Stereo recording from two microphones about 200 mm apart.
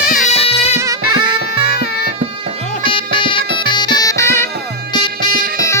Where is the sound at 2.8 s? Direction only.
25° left (ahead or behind).